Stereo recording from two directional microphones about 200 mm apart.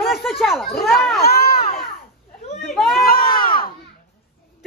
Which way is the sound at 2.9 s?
45° left (ahead or behind).